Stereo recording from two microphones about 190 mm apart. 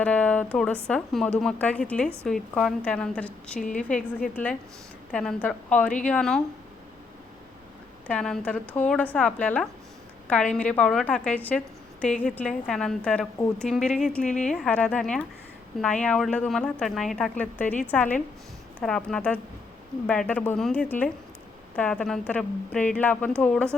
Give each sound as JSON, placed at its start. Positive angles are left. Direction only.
{"t": 0.0, "sound": "a sound", "side_deg": 5}
{"t": 0.5, "sound": "a woman's voice", "side_deg": 5}
{"t": 5.1, "sound": "a woman's voice", "side_deg": 5}
{"t": 8.0, "sound": "a woman's voice", "side_deg": 5}
{"t": 14.3, "sound": "speech", "side_deg": 40}
{"t": 14.5, "sound": "a woman's voice", "side_deg": 5}